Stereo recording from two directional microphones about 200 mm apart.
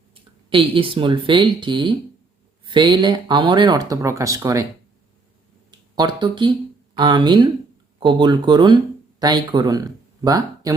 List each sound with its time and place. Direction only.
0.1 s speech: 25° right (ahead or behind)
6.0 s speech: 20° right (ahead or behind)